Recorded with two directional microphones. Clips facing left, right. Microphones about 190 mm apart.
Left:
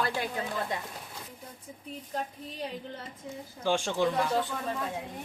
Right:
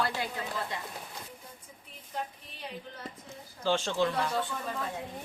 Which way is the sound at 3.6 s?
15° left (ahead or behind).